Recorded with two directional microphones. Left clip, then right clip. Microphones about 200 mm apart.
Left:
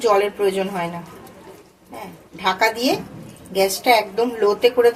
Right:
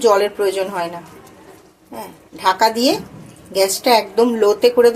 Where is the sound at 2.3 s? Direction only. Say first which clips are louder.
Right 4 dB; 35° right (ahead or behind).